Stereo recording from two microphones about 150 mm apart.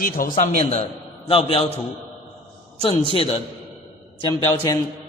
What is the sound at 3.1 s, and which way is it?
Speech, 40° left (ahead or behind).